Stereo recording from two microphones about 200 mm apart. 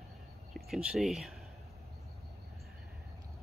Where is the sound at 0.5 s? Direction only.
5° right (ahead or behind).